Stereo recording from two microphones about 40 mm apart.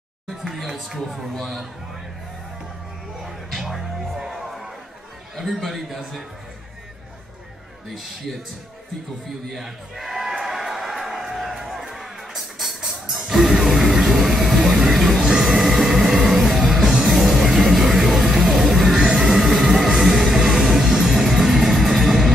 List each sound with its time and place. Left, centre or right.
0.4 s a sound: centre
1.3 s speech: centre
3.3 s music: centre
5.3 s a man's voice: centre
7.9 s a man's voice: centre
9.5 s a sound: centre
11.3 s music: centre
13.7 s train: centre
15.1 s music: centre